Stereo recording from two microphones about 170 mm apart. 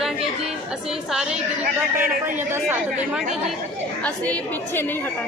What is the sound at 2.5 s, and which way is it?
Speech, 10° right (ahead or behind).